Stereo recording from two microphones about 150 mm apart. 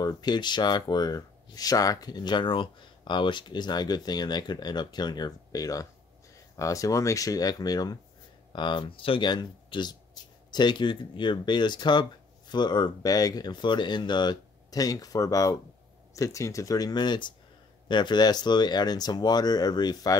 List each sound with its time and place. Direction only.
0.0 s speech: 30° left (ahead or behind)